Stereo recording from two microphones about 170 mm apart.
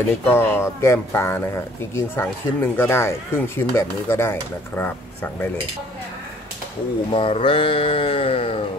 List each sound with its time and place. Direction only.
0.2 s speech: 15° left (ahead or behind)
7.1 s speech: 35° left (ahead or behind)